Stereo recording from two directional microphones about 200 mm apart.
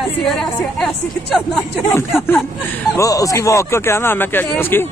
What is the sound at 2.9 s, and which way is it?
Speech, 15° left (ahead or behind).